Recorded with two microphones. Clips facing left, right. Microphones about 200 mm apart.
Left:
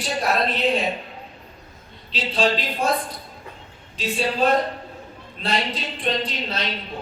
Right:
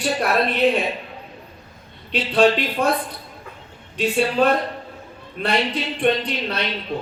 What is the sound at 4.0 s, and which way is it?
A woman's voice, 60° right (ahead or behind).